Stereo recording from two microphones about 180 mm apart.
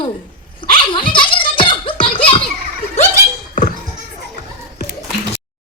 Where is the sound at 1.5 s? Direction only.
25° left (ahead or behind).